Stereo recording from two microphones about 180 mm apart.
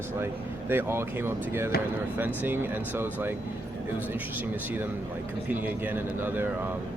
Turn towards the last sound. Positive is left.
turn(degrees=-10)  # may be behind; listen again after turning